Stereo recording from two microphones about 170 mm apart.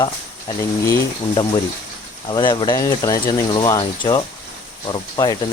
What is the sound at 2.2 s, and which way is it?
Speech, 25° left (ahead or behind).